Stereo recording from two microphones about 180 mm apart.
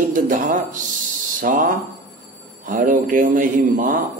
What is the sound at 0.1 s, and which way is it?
A man's voice, 45° right (ahead or behind).